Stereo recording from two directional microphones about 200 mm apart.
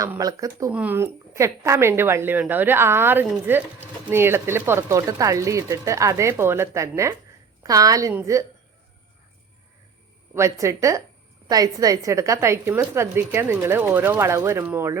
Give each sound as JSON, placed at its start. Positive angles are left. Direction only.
{"t": 0.0, "sound": "a woman's voice", "side_deg": -15}
{"t": 0.7, "sound": "a woman's voice", "side_deg": -5}
{"t": 10.3, "sound": "a woman's voice", "side_deg": -15}